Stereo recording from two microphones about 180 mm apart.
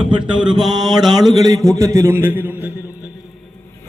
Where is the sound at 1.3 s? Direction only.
20° right (ahead or behind).